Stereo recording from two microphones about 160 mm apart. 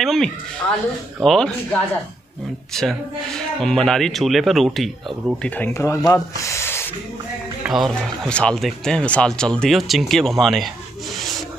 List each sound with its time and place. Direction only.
0.0 s speech: centre (ahead or behind)
5.7 s speech: 20° left (ahead or behind)
7.6 s speech: centre (ahead or behind)